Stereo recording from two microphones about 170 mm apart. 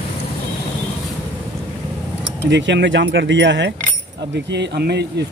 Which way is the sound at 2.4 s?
90° right.